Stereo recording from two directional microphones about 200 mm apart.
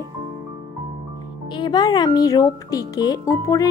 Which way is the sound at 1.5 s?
20° left (ahead or behind).